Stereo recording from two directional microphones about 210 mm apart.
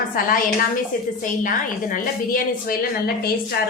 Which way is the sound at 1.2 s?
40° left (ahead or behind).